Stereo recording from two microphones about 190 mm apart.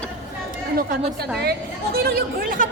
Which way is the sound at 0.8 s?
50° right (ahead or behind).